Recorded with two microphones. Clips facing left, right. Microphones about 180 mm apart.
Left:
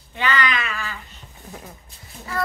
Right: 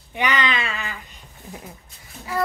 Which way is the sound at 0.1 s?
15° right (ahead or behind).